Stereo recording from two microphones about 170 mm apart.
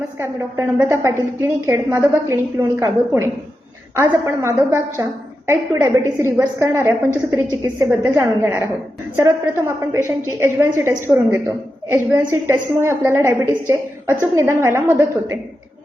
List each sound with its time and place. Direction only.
0.2 s a woman's voice: 15° right (ahead or behind)